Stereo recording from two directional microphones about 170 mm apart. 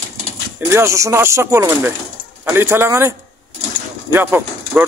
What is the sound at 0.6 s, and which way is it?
Speech, 15° right (ahead or behind).